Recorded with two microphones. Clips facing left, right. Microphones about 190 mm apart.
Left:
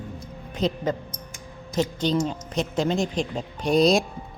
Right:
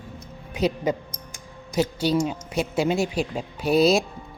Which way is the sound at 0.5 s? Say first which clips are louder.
Right 2 dB; 10° right (ahead or behind).